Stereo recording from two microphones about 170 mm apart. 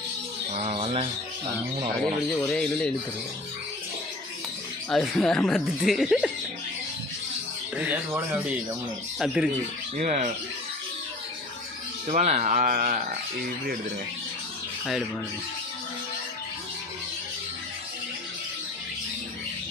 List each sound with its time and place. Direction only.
0.5 s bird: 35° right (ahead or behind)
2.2 s speech: 5° left (ahead or behind)
4.8 s speech: 5° left (ahead or behind)
7.7 s speech: 10° right (ahead or behind)
9.9 s speech: 45° right (ahead or behind)
12.1 s speech: 45° right (ahead or behind)